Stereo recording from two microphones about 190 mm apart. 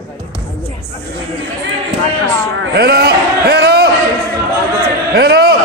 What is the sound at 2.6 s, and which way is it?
A man's voice, 55° right (ahead or behind).